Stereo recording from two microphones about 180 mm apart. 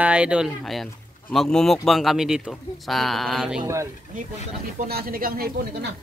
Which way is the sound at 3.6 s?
15° right (ahead or behind).